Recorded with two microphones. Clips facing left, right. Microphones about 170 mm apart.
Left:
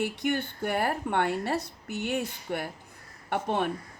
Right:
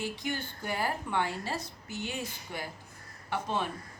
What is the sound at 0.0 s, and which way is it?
A woman's voice, 60° left (ahead or behind).